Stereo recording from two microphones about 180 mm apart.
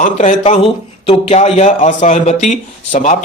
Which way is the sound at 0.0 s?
45° left (ahead or behind).